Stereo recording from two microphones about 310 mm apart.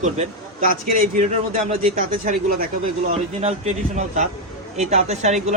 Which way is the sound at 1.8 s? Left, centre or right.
Right.